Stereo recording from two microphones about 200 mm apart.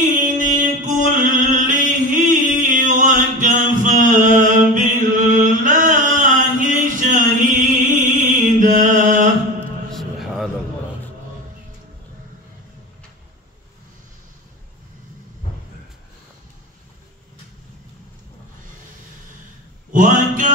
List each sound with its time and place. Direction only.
0.0 s mantra: 40° right (ahead or behind)
9.9 s a sound: centre (ahead or behind)
19.9 s mantra: 40° right (ahead or behind)